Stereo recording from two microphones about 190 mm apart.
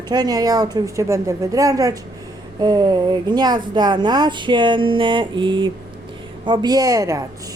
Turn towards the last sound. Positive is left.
turn(degrees=-15)  # may be behind; listen again after turning